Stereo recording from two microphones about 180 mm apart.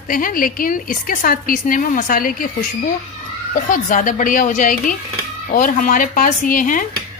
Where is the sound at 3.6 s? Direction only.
45° left (ahead or behind).